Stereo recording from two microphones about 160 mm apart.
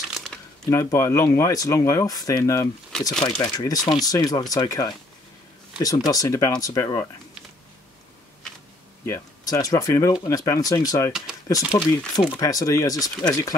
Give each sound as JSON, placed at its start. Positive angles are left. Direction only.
{"t": 0.1, "sound": "a sound", "side_deg": 0}
{"t": 0.7, "sound": "speech", "side_deg": 20}
{"t": 2.9, "sound": "speech", "side_deg": 0}
{"t": 3.5, "sound": "speech", "side_deg": 25}
{"t": 9.0, "sound": "speech", "side_deg": 20}